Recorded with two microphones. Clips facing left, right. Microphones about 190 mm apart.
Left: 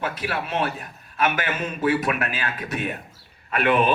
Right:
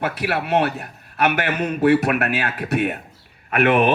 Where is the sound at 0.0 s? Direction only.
65° right (ahead or behind).